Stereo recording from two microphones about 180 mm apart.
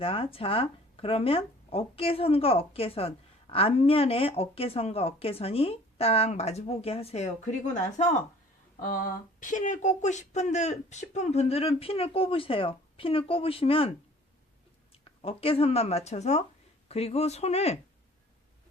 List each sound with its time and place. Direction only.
0.0 s speech: 30° left (ahead or behind)
9.4 s speech: 45° left (ahead or behind)
15.2 s speech: 30° left (ahead or behind)